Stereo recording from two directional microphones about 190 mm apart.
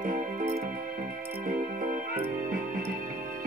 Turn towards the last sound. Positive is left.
turn(degrees=-45)  # may be behind; listen again after turning